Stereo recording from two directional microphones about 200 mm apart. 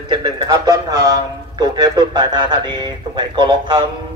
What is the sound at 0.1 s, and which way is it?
A man's voice, 20° right (ahead or behind).